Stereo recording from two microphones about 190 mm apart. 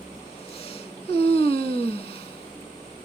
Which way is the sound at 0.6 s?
30° left (ahead or behind).